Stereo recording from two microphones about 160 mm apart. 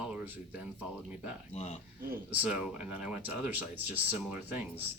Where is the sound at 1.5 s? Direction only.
40° left (ahead or behind).